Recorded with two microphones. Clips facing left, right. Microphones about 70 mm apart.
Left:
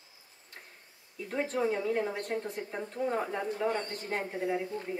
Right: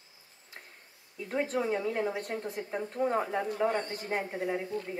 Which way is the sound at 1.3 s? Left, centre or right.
Centre.